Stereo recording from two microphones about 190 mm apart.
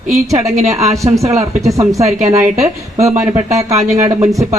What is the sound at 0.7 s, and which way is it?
A man's voice, 15° right (ahead or behind).